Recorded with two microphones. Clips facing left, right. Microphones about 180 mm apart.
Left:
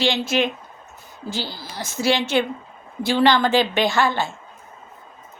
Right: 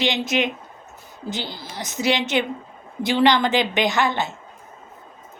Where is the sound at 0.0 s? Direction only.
20° right (ahead or behind).